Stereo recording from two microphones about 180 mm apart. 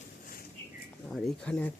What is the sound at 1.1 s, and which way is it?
Speech, 5° left (ahead or behind).